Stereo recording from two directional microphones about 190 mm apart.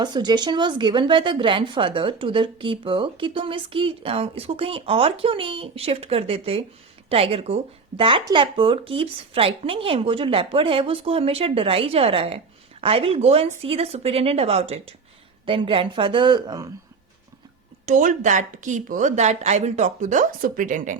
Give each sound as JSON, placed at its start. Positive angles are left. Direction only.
{"t": 0.0, "sound": "a woman's voice", "side_deg": -20}
{"t": 17.8, "sound": "speech", "side_deg": -40}